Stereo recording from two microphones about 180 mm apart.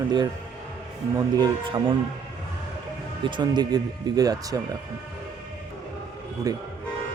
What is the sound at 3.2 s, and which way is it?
Speech, 25° right (ahead or behind).